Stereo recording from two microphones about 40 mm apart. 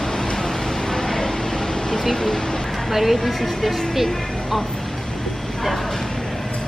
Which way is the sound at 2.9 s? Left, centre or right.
Centre.